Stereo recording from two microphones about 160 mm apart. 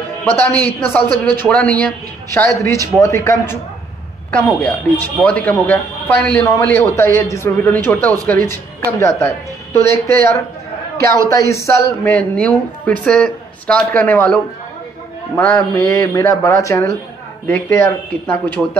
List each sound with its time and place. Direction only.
0.2 s speech: 10° left (ahead or behind)
15.3 s speech: 15° left (ahead or behind)